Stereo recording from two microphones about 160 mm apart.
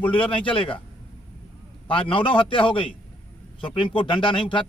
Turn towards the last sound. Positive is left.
turn(degrees=30)  # may be behind; listen again after turning